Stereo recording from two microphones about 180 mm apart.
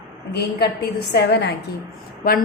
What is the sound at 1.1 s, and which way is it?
Speech, 65° left (ahead or behind).